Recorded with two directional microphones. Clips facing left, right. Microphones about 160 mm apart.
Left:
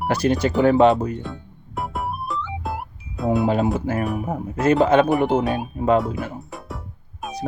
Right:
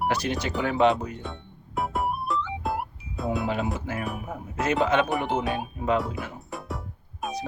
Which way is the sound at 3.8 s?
45° left (ahead or behind).